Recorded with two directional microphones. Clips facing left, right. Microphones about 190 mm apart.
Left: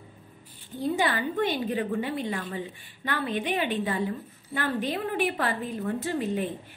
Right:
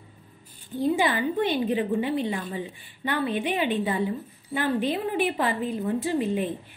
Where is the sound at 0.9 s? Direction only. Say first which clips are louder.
Left 1 dB; 15° right (ahead or behind).